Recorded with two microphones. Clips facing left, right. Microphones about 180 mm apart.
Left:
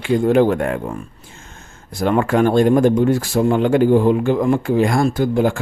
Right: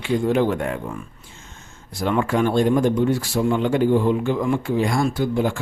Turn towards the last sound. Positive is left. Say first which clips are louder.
# left 4 dB
turn(degrees=50)  # may be behind; listen again after turning